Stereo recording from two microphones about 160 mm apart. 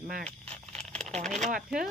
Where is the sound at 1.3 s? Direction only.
55° right (ahead or behind).